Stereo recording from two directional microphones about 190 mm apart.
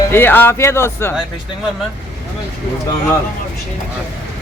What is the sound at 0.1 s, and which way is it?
Speech, 10° left (ahead or behind).